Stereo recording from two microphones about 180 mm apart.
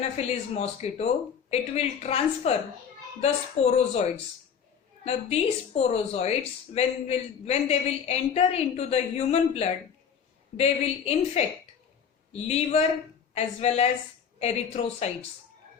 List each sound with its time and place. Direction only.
0.0 s a man's voice: 35° left (ahead or behind)